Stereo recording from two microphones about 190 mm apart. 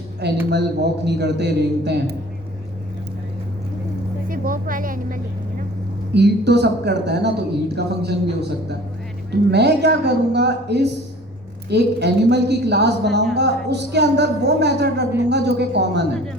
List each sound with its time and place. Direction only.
0.5 s speech: 60° right (ahead or behind)
4.3 s speech: 50° right (ahead or behind)
6.1 s speech: 60° right (ahead or behind)